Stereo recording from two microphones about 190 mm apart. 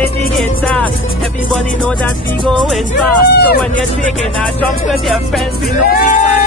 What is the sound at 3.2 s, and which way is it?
Speech, 55° left (ahead or behind).